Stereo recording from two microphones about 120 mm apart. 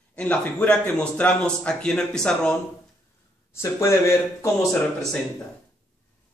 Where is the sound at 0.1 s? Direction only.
10° left (ahead or behind).